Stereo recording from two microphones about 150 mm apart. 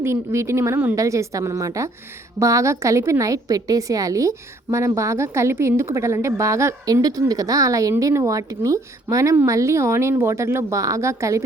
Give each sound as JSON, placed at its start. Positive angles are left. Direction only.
{"t": 0.0, "sound": "a woman's voice", "side_deg": -20}